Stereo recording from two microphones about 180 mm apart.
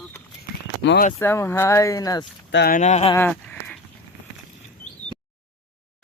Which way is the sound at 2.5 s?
60° left (ahead or behind).